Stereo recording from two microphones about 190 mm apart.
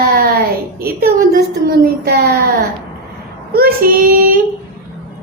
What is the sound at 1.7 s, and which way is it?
Child singing, 55° right (ahead or behind).